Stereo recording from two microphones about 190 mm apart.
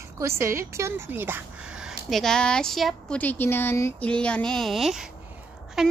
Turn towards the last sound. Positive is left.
turn(degrees=0)  # may be behind; listen again after turning